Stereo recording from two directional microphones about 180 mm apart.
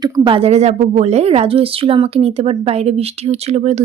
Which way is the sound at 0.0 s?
30° right (ahead or behind).